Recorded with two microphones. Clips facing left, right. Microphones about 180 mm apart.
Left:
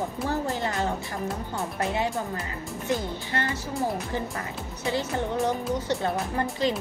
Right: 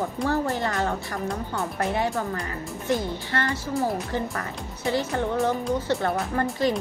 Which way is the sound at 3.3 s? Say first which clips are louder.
Right 3 dB; 15° left (ahead or behind).